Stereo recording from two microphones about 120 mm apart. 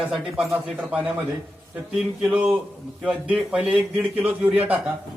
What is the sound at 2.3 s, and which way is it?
A man's voice, 10° right (ahead or behind).